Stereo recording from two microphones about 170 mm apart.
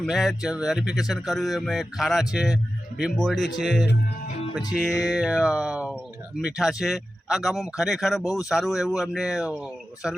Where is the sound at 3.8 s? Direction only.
80° left.